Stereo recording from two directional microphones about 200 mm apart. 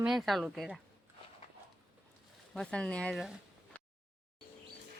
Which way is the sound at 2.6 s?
5° left (ahead or behind).